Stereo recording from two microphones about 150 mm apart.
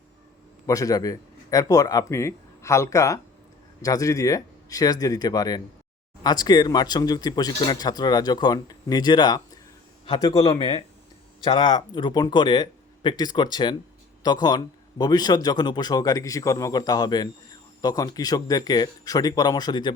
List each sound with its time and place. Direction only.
0.7 s speech: 25° left (ahead or behind)